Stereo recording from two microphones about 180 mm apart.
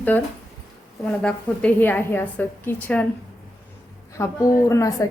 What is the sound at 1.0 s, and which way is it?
A woman's voice, 5° left (ahead or behind).